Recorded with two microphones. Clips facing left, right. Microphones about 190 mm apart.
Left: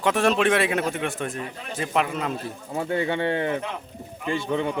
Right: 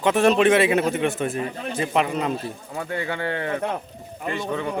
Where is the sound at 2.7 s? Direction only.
25° left (ahead or behind).